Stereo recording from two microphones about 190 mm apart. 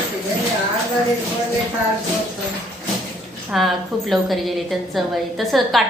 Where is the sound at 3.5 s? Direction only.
Centre (ahead or behind).